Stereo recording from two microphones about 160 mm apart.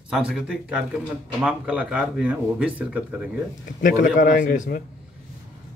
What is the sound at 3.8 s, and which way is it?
A man's voice, 55° left (ahead or behind).